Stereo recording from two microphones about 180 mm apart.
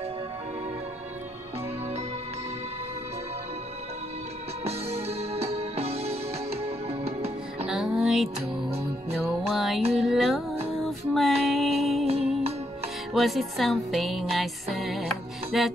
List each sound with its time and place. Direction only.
4.6 s music: 35° right (ahead or behind)
7.6 s music: 5° right (ahead or behind)
10.7 s female singing: centre (ahead or behind)
11.4 s music: centre (ahead or behind)
12.1 s music: 35° right (ahead or behind)
13.1 s music: centre (ahead or behind)